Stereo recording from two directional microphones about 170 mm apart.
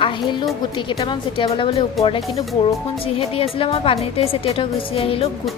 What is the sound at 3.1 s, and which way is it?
A woman's voice, 35° left (ahead or behind).